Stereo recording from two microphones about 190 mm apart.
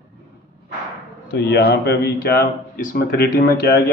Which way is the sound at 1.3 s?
60° left (ahead or behind).